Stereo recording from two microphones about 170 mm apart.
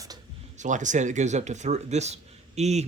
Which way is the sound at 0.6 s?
45° right (ahead or behind).